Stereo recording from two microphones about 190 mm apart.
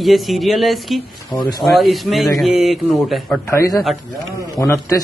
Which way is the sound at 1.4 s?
20° left (ahead or behind).